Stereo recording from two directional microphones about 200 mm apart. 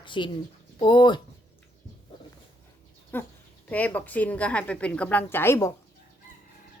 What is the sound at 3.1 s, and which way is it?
Speech, 10° left (ahead or behind).